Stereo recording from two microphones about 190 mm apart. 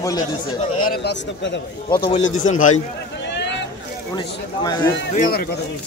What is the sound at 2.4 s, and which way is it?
Speech, 40° left (ahead or behind).